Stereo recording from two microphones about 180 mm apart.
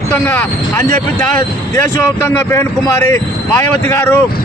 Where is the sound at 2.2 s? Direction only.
15° left (ahead or behind).